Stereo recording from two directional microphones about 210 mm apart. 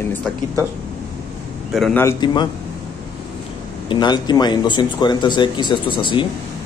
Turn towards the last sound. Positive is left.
turn(degrees=25)  # may be behind; listen again after turning